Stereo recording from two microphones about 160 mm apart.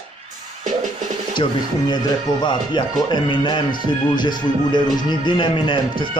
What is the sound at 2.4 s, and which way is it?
Speech, 30° left (ahead or behind).